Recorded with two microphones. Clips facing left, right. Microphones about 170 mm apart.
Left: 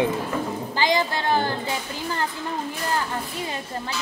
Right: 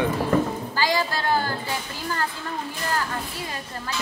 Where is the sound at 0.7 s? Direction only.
20° left (ahead or behind).